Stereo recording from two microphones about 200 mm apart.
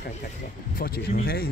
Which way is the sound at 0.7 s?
50° left (ahead or behind).